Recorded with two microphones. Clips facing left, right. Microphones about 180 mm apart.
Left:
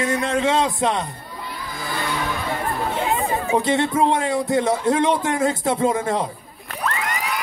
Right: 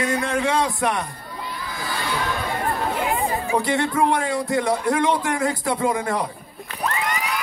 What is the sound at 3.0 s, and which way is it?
Speech, 25° left (ahead or behind).